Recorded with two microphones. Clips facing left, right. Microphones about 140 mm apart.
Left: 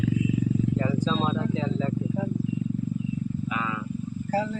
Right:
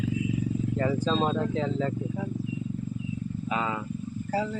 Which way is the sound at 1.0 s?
50° right (ahead or behind).